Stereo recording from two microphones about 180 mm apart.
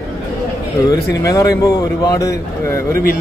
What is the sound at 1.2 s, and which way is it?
Speech, 15° left (ahead or behind).